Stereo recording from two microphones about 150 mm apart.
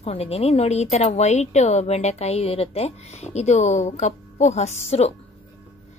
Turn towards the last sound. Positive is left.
turn(degrees=45)  # may be behind; listen again after turning